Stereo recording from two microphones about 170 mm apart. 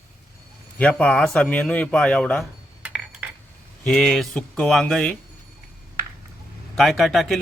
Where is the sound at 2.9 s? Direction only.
10° right (ahead or behind).